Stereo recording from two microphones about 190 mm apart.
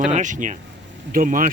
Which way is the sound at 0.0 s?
40° right (ahead or behind).